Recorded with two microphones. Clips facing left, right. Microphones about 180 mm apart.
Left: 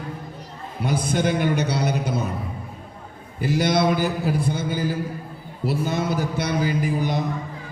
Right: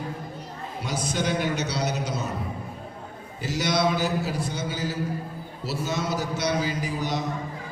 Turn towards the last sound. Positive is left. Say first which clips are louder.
# left 5 dB
turn(degrees=55)  # may be behind; listen again after turning